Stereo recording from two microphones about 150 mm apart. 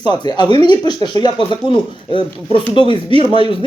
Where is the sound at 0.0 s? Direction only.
30° left (ahead or behind).